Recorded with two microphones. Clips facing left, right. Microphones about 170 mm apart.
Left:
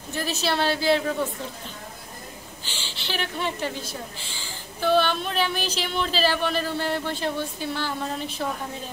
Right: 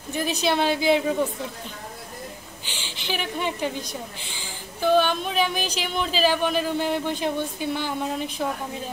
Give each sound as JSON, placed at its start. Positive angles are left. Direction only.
{"t": 0.1, "sound": "speech", "side_deg": -15}
{"t": 2.6, "sound": "a woman's voice", "side_deg": -15}